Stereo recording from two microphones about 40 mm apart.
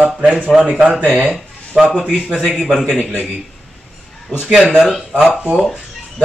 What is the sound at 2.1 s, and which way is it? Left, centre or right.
Speech, right.